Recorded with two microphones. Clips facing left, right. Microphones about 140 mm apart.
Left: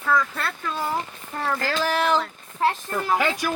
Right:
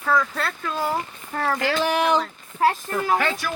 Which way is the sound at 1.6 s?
20° right (ahead or behind).